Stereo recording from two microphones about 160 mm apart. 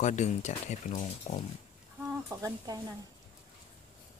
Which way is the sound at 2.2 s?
20° right (ahead or behind).